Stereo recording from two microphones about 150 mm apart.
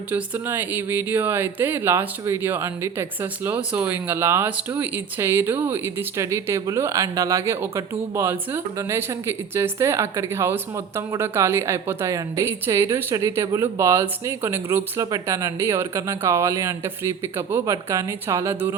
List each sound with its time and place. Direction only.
0.1 s speech: 15° right (ahead or behind)